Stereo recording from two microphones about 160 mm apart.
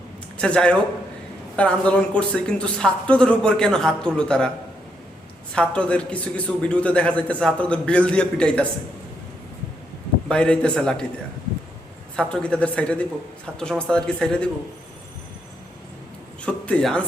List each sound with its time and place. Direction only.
0.4 s a man's voice: 5° left (ahead or behind)
5.5 s a man's voice: 5° left (ahead or behind)
10.2 s speech: 5° left (ahead or behind)
12.1 s a man's voice: 5° left (ahead or behind)
16.5 s a man's voice: 5° left (ahead or behind)